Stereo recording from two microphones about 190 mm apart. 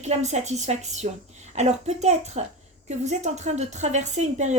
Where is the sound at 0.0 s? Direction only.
35° right (ahead or behind).